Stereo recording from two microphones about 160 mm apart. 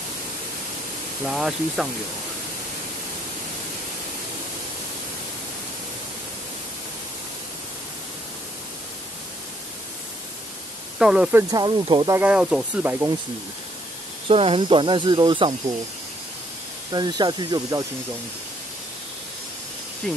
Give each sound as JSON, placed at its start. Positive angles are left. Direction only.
{"t": 1.2, "sound": "speech", "side_deg": -5}
{"t": 11.0, "sound": "speech", "side_deg": -5}
{"t": 11.5, "sound": "speech", "side_deg": -30}
{"t": 12.2, "sound": "speech", "side_deg": -5}
{"t": 14.3, "sound": "speech", "side_deg": -35}
{"t": 16.9, "sound": "speech", "side_deg": -25}
{"t": 20.0, "sound": "speech", "side_deg": 5}